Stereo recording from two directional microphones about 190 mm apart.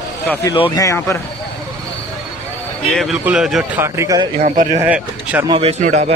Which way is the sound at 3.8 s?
15° right (ahead or behind).